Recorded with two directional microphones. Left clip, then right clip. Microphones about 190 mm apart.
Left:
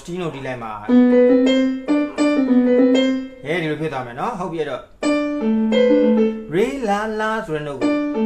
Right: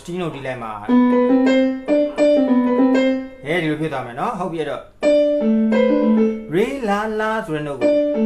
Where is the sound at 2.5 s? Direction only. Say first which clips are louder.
Left 2 dB; 20° right (ahead or behind).